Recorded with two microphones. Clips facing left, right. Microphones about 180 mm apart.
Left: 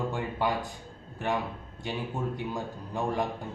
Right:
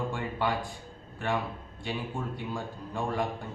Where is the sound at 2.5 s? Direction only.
20° left (ahead or behind).